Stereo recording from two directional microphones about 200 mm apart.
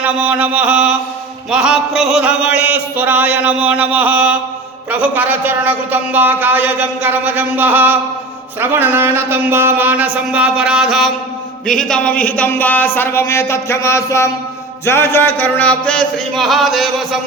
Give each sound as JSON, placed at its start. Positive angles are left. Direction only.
{"t": 0.0, "sound": "speech", "side_deg": -5}
{"t": 11.6, "sound": "music", "side_deg": 5}
{"t": 12.2, "sound": "speech", "side_deg": 10}
{"t": 14.8, "sound": "music", "side_deg": 10}